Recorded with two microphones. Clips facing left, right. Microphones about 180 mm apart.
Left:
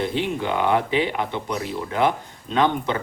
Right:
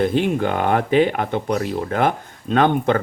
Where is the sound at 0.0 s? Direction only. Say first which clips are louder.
Right 6 dB; 50° right (ahead or behind).